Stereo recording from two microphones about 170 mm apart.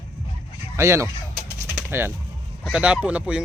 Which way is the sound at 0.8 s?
15° right (ahead or behind).